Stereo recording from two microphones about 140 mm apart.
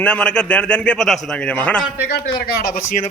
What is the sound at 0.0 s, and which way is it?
A man's voice, 10° left (ahead or behind).